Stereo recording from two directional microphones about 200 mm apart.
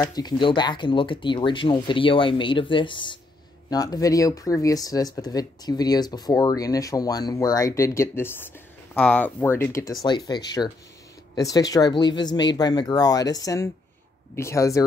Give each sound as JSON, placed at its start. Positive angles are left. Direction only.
{"t": 0.0, "sound": "speech", "side_deg": 20}